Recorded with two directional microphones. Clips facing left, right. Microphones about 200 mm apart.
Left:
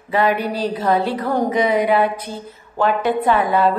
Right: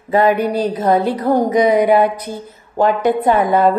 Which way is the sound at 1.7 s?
15° right (ahead or behind).